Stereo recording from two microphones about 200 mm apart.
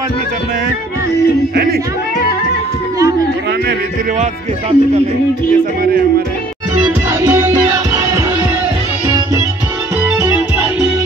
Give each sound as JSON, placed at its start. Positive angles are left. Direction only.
{"t": 4.2, "sound": "speech", "side_deg": -35}
{"t": 6.8, "sound": "music", "side_deg": -15}